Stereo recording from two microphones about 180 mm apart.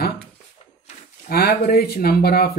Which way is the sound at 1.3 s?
60° left (ahead or behind).